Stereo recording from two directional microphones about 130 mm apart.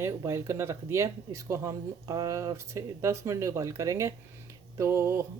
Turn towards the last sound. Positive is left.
turn(degrees=-20)  # may be behind; listen again after turning